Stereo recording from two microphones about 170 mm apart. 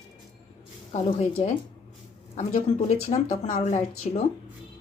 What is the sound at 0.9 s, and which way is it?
Speech, 40° left (ahead or behind).